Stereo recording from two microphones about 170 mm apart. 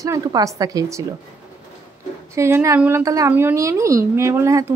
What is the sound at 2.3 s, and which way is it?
A woman's voice, 15° right (ahead or behind).